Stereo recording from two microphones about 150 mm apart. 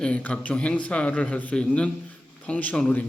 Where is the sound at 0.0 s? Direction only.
10° left (ahead or behind).